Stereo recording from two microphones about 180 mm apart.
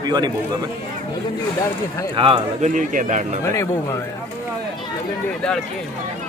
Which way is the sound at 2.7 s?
45° right (ahead or behind).